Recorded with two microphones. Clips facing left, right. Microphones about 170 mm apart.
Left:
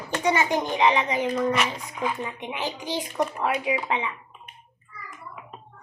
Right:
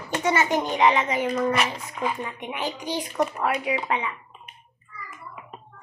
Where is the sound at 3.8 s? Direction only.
20° left (ahead or behind).